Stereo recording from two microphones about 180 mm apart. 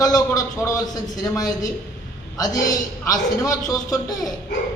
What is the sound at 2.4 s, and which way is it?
A man's voice, 20° left (ahead or behind).